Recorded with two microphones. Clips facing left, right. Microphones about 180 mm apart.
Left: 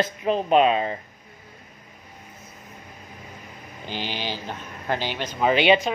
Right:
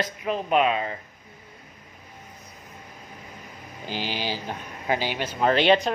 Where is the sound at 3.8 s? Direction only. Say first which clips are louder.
Right 1 dB; 5° right (ahead or behind).